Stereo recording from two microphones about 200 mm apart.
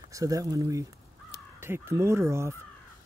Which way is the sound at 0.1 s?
15° right (ahead or behind).